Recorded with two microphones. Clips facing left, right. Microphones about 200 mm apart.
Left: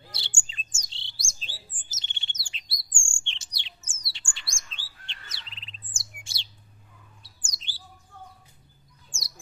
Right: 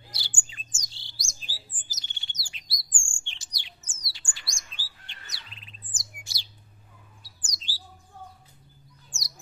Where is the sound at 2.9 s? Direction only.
25° left (ahead or behind).